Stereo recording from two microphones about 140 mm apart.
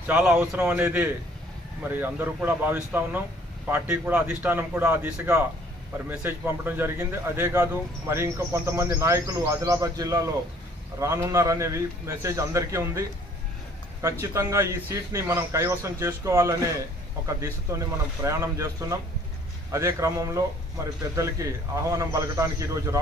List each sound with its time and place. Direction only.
0.0 s a man's voice: 10° right (ahead or behind)
14.2 s speech: 20° right (ahead or behind)